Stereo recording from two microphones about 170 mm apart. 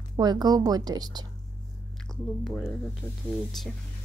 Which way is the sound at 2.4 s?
10° left (ahead or behind).